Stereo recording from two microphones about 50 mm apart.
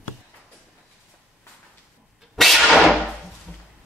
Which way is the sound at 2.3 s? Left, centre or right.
Centre.